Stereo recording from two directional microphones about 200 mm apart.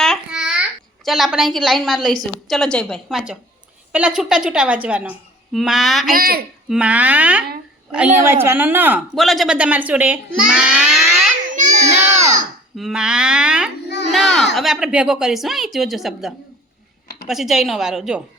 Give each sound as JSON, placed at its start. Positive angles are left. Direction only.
{"t": 0.0, "sound": "babbling", "side_deg": 0}
{"t": 1.0, "sound": "a woman's voice", "side_deg": 0}
{"t": 6.1, "sound": "speech", "side_deg": -50}
{"t": 6.7, "sound": "speech", "side_deg": -5}
{"t": 10.4, "sound": "baby cry", "side_deg": -5}
{"t": 12.1, "sound": "babbling", "side_deg": -35}
{"t": 12.7, "sound": "a woman's voice", "side_deg": 0}
{"t": 13.8, "sound": "a sound", "side_deg": 60}
{"t": 14.1, "sound": "a sound", "side_deg": 0}
{"t": 14.5, "sound": "a woman's voice", "side_deg": 0}